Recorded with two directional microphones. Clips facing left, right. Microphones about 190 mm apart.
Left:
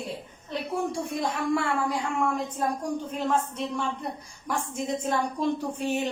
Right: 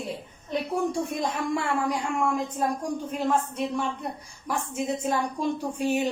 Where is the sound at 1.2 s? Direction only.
20° right (ahead or behind).